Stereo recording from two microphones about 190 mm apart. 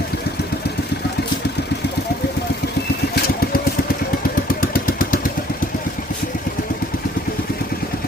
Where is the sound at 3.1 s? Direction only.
50° left (ahead or behind).